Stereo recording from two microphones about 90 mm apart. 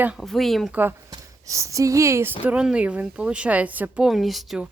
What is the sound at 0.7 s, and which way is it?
Speech, 20° right (ahead or behind).